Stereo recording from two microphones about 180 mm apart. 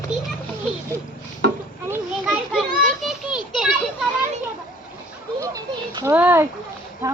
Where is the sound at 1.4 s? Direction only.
65° right (ahead or behind).